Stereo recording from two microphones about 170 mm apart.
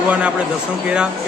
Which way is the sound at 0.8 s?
5° right (ahead or behind).